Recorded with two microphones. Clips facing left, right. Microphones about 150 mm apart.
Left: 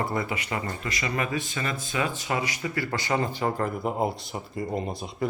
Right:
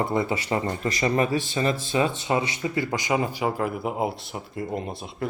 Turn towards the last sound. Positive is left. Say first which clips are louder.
# left 1 dB
turn(degrees=0)  # may be behind; listen again after turning